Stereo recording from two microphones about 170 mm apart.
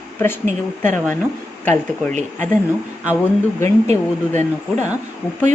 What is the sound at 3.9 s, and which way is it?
Speech, 45° right (ahead or behind).